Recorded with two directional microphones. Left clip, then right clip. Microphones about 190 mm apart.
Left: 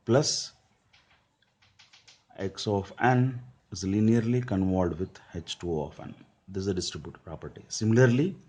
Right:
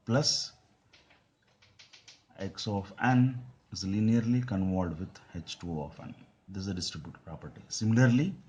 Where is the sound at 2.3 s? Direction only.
35° left (ahead or behind).